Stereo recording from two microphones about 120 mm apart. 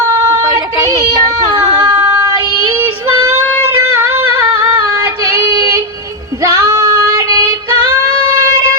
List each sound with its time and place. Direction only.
0.0 s child singing: 25° right (ahead or behind)
3.7 s a sound: 20° right (ahead or behind)
5.3 s child singing: 30° right (ahead or behind)
6.5 s female singing: 25° right (ahead or behind)